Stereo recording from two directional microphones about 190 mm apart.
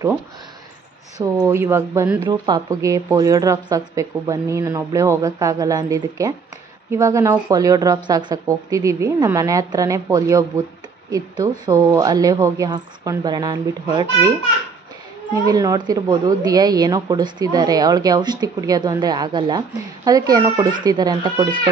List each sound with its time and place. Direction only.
1.1 s a woman's voice: 20° right (ahead or behind)
15.4 s a woman's voice: 20° right (ahead or behind)